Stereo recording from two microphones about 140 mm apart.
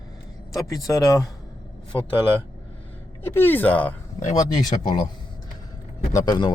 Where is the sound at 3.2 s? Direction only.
15° left (ahead or behind).